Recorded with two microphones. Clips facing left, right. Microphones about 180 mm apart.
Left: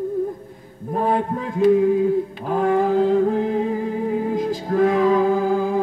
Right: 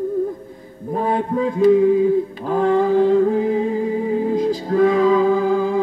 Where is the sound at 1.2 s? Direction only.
Centre (ahead or behind).